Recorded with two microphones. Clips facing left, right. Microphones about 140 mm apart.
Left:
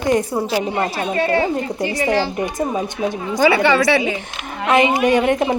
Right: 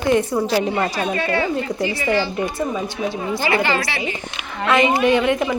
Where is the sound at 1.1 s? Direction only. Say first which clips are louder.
Left 6 dB; 35° left (ahead or behind).